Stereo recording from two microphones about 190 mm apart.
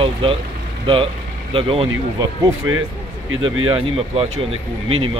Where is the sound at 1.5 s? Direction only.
30° right (ahead or behind).